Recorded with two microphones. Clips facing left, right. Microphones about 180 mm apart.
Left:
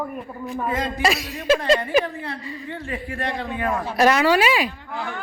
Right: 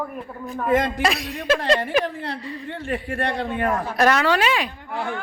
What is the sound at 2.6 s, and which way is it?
Speech, 60° right (ahead or behind).